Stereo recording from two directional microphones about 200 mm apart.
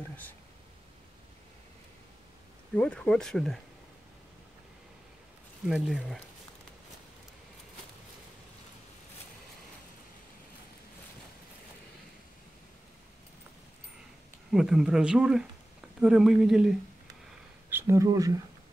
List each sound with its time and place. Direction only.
2.7 s speech: 5° left (ahead or behind)
5.7 s speech: centre (ahead or behind)
14.5 s speech: centre (ahead or behind)